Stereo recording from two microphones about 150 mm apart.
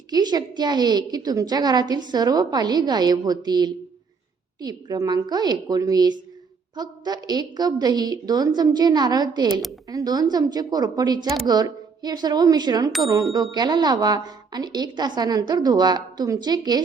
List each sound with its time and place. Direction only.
0.1 s a woman's voice: 25° right (ahead or behind)